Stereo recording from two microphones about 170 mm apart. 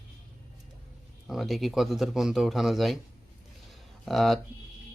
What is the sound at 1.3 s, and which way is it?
Speech, centre (ahead or behind).